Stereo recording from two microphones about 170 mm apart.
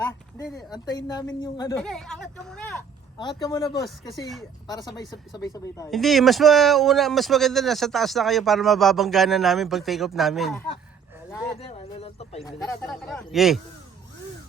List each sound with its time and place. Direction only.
0.5 s speech: 25° left (ahead or behind)
1.8 s speech: 5° left (ahead or behind)
3.2 s speech: 25° left (ahead or behind)
3.8 s speech: centre (ahead or behind)
4.7 s speech: 20° left (ahead or behind)
5.9 s speech: centre (ahead or behind)
11.3 s a sound: 20° left (ahead or behind)
11.6 s speech: 35° left (ahead or behind)
12.5 s speech: 20° left (ahead or behind)
12.9 s speech: 5° left (ahead or behind)